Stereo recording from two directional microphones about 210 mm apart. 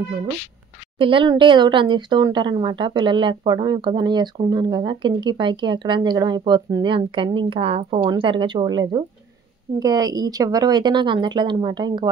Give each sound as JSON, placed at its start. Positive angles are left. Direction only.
{"t": 0.9, "sound": "speech", "side_deg": -25}